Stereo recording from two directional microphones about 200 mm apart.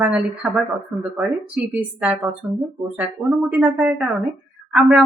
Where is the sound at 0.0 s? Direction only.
5° right (ahead or behind).